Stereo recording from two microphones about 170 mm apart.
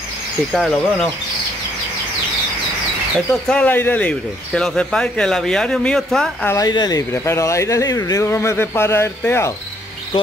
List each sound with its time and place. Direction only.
0.5 s speech: centre (ahead or behind)
3.3 s speech: 10° left (ahead or behind)
6.5 s speech: 25° left (ahead or behind)